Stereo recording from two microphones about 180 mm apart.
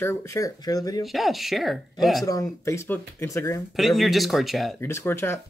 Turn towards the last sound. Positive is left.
turn(degrees=15)  # may be behind; listen again after turning